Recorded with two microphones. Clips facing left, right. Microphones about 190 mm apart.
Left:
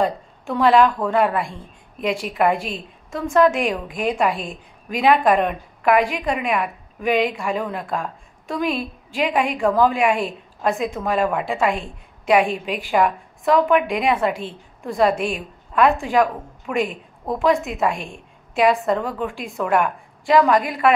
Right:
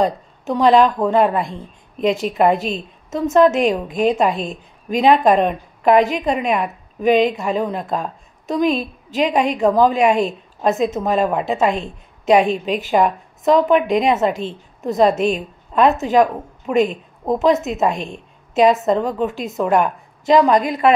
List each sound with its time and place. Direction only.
0.0 s a woman's voice: 20° right (ahead or behind)